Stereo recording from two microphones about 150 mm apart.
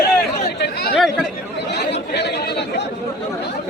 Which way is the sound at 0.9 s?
Centre (ahead or behind).